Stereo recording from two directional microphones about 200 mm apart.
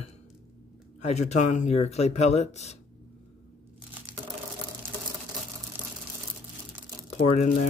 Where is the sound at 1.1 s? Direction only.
35° left (ahead or behind).